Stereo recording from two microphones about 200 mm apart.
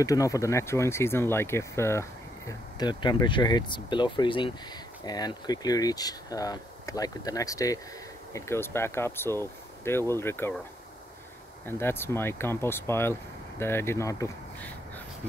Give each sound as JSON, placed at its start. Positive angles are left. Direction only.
{"t": 0.0, "sound": "speech", "side_deg": 15}
{"t": 11.6, "sound": "speech", "side_deg": 10}